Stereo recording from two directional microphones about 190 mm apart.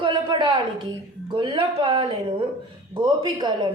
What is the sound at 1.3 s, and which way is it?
A woman's voice, 25° right (ahead or behind).